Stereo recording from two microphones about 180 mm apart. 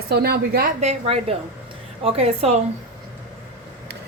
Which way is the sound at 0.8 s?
35° right (ahead or behind).